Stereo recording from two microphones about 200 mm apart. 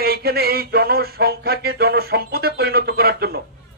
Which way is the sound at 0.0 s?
50° right (ahead or behind).